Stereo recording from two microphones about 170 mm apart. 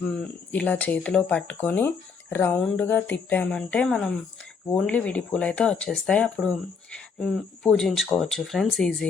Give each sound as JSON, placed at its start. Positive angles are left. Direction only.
{"t": 0.1, "sound": "speech", "side_deg": 5}